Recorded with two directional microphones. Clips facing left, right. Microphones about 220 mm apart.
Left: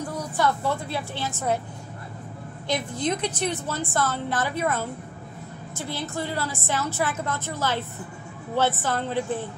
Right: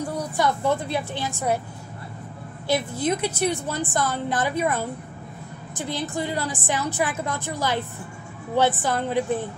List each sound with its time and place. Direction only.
0.4 s a woman's voice: 15° right (ahead or behind)
2.7 s a woman's voice: 10° right (ahead or behind)